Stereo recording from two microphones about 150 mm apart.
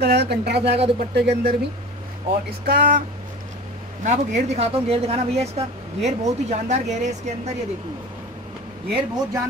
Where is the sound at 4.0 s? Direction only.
50° right (ahead or behind).